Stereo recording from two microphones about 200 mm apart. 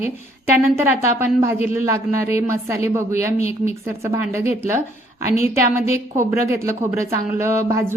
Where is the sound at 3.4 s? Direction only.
30° left (ahead or behind).